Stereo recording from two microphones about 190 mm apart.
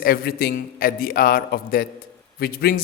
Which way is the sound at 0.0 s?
50° left (ahead or behind).